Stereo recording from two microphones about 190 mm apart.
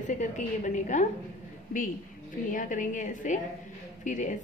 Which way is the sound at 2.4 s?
45° left (ahead or behind).